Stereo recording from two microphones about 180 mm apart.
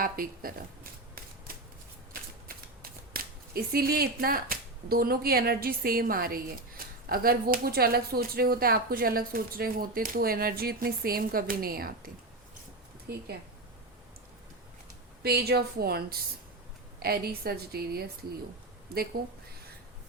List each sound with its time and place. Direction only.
0.0 s speech: 55° right (ahead or behind)
2.8 s speech: 55° right (ahead or behind)
15.2 s speech: 60° right (ahead or behind)